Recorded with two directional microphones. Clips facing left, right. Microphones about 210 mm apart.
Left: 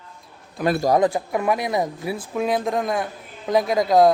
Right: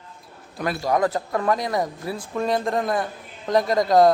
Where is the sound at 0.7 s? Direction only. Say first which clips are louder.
Left 6 dB; 45° left (ahead or behind).